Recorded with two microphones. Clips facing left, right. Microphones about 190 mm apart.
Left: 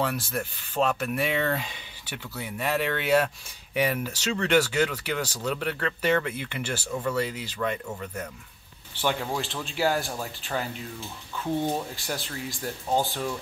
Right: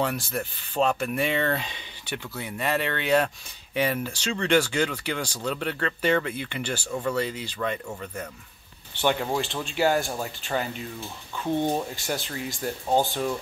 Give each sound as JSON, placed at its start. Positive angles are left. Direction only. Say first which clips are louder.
{"t": 0.0, "sound": "speech", "louder": "right 1 dB", "side_deg": 0}
{"t": 11.5, "sound": "speech", "louder": "right 2 dB", "side_deg": -20}
{"t": 11.9, "sound": "speech", "louder": "right 3 dB", "side_deg": 0}